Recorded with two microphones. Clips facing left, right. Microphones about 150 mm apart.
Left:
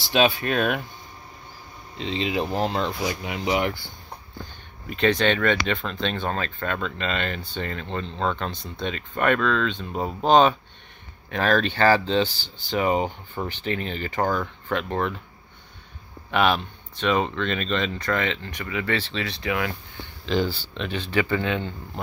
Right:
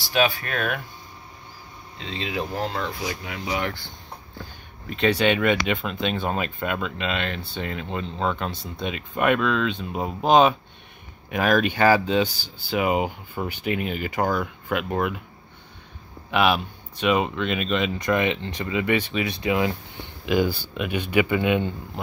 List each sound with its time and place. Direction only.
0.0 s speech: 20° left (ahead or behind)
2.0 s speech: 20° left (ahead or behind)
4.4 s speech: centre (ahead or behind)
16.3 s speech: 5° right (ahead or behind)
22.0 s speech: 5° right (ahead or behind)